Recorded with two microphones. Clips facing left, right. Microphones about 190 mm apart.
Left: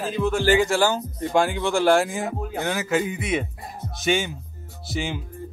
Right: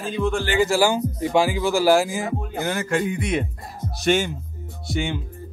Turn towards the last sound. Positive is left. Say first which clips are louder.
# right 3 dB
turn(degrees=0)  # may be behind; listen again after turning